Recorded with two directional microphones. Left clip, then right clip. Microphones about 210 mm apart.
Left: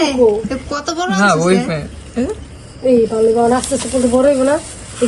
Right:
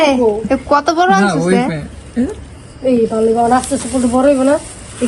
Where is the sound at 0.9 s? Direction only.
15° left (ahead or behind).